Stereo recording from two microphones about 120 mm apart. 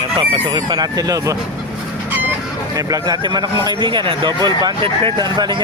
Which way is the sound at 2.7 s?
30° right (ahead or behind).